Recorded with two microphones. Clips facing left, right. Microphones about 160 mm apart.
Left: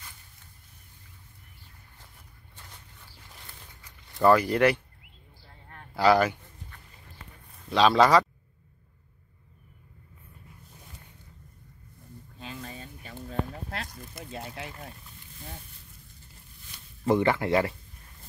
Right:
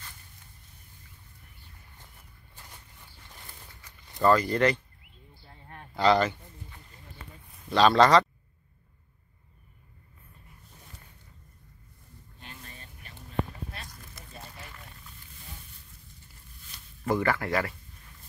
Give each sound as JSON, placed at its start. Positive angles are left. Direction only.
{"t": 4.2, "sound": "speech", "side_deg": 10}
{"t": 5.9, "sound": "speech", "side_deg": 10}
{"t": 7.7, "sound": "speech", "side_deg": 0}
{"t": 14.3, "sound": "boat", "side_deg": 90}
{"t": 17.0, "sound": "speech", "side_deg": 25}